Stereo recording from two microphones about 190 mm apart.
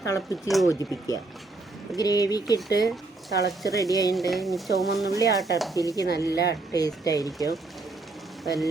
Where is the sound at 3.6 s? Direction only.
20° left (ahead or behind).